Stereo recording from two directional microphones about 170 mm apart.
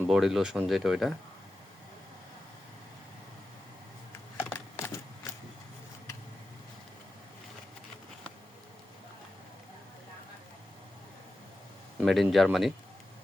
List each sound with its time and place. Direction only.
0.1 s speech: centre (ahead or behind)
4.4 s typewriter: 20° left (ahead or behind)
11.9 s speech: centre (ahead or behind)